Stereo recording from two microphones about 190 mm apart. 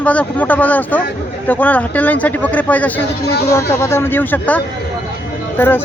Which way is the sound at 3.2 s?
60° left (ahead or behind).